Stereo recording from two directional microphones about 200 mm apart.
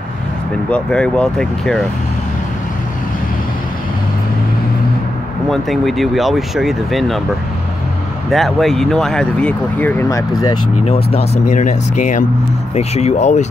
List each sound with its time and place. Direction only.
0.7 s speech: 5° left (ahead or behind)
5.5 s speech: centre (ahead or behind)
8.3 s speech: centre (ahead or behind); by 10.6 s 15° left (ahead or behind)
10.8 s speech: 30° left (ahead or behind)